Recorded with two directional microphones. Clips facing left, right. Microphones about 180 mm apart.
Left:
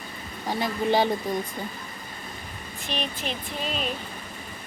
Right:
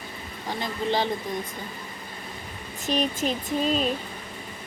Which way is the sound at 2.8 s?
40° right (ahead or behind).